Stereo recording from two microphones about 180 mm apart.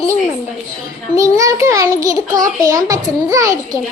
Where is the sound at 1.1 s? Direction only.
15° right (ahead or behind).